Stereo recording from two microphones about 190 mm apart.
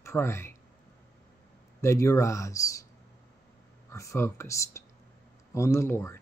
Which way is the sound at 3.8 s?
15° left (ahead or behind).